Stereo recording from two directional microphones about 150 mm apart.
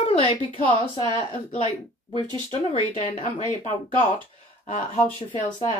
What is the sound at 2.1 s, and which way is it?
Speech, 30° right (ahead or behind).